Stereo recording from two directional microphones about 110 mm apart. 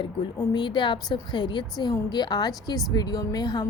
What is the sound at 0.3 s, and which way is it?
A woman's voice, 45° left (ahead or behind).